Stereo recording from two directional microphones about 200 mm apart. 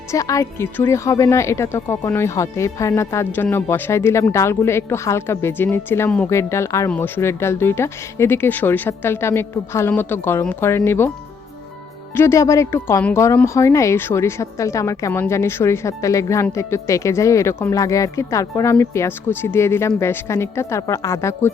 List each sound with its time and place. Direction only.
0.1 s speech: 15° left (ahead or behind)
12.1 s speech: 15° left (ahead or behind)